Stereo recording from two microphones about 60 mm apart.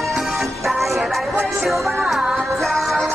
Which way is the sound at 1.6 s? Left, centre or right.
Centre.